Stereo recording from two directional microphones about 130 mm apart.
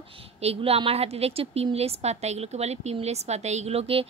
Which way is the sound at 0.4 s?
50° right (ahead or behind).